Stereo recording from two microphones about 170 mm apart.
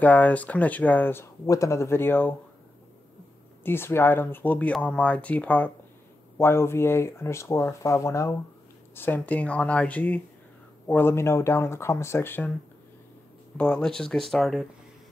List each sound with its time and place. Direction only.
0.0 s speech: 10° left (ahead or behind)
3.6 s speech: 15° left (ahead or behind)
13.6 s speech: 5° left (ahead or behind)